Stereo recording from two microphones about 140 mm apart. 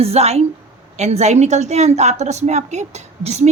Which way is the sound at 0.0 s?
50° right (ahead or behind).